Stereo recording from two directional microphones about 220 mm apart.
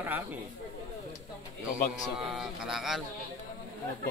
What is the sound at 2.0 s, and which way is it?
Speech, centre (ahead or behind).